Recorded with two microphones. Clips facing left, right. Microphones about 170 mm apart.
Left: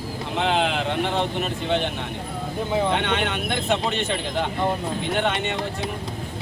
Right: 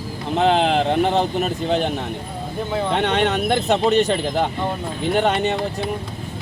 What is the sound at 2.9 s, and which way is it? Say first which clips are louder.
Speech: right 5 dB; 40° right (ahead or behind).